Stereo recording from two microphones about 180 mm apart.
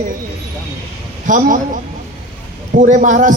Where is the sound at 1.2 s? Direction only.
45° right (ahead or behind).